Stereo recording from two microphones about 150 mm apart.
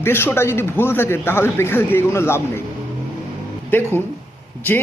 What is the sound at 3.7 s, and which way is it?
Speech, 10° left (ahead or behind).